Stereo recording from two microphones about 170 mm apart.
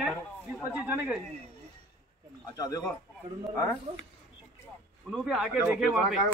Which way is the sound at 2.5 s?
20° left (ahead or behind).